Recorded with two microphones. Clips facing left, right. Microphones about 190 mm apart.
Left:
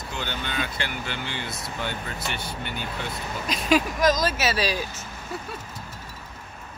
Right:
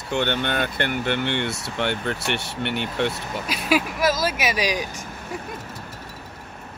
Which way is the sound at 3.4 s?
5° right (ahead or behind).